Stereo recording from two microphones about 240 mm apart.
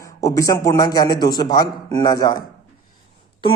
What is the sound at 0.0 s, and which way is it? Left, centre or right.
A man's voice, centre.